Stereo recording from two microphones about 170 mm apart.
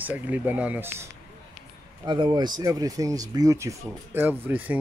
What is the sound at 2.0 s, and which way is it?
Speech, 30° right (ahead or behind).